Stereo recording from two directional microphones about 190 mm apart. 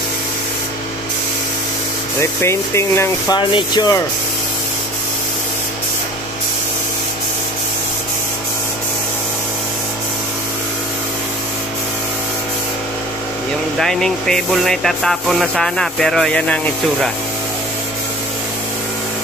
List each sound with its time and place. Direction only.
2.1 s speech: 15° left (ahead or behind)
13.7 s speech: centre (ahead or behind)